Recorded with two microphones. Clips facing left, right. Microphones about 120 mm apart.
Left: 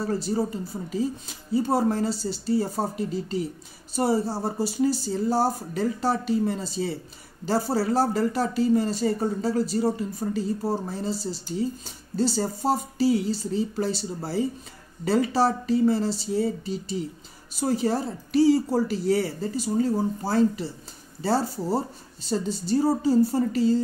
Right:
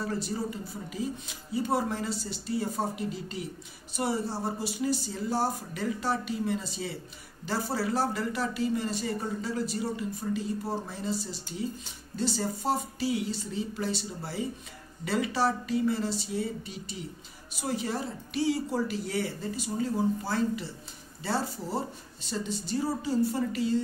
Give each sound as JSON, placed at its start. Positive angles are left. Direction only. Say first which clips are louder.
{"t": 0.0, "sound": "speech", "louder": "left 6 dB", "side_deg": 35}